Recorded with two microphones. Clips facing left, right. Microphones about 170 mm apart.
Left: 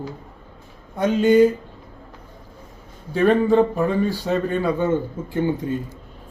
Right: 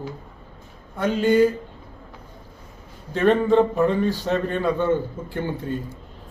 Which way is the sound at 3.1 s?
10° left (ahead or behind).